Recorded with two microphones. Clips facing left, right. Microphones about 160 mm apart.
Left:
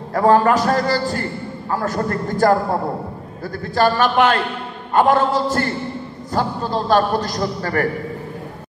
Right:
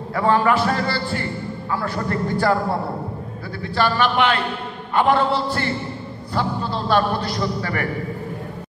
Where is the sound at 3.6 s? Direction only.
45° left (ahead or behind).